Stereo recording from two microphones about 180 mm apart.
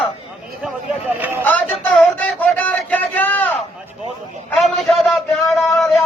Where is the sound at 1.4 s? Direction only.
10° left (ahead or behind).